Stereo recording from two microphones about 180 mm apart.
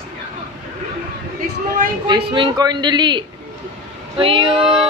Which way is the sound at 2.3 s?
30° right (ahead or behind).